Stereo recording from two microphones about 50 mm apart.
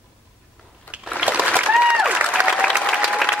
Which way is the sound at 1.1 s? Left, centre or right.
Right.